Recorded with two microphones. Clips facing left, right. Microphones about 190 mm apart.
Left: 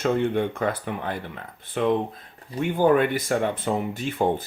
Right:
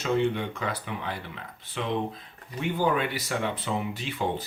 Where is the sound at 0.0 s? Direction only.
50° left (ahead or behind).